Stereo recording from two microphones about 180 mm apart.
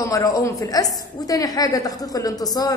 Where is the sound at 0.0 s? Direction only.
15° left (ahead or behind).